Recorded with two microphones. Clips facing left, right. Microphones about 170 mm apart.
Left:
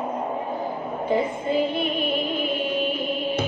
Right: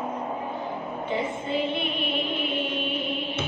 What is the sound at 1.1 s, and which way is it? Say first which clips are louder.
Music: left 5 dB; 40° left (ahead or behind).